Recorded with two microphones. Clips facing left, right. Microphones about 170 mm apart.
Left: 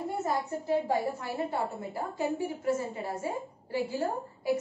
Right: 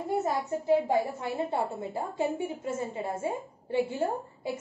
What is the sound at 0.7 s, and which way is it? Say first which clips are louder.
A woman's voice: right 4 dB; 20° right (ahead or behind).